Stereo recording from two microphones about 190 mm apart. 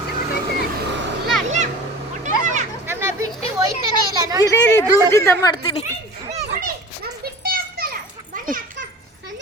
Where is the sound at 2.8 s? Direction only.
10° right (ahead or behind).